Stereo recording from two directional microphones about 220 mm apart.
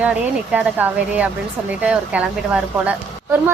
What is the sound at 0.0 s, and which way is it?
A woman's voice, 5° right (ahead or behind).